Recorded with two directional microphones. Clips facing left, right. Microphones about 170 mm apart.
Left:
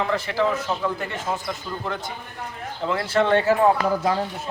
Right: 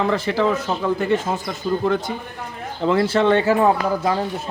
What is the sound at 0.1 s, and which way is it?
Speech, 30° right (ahead or behind).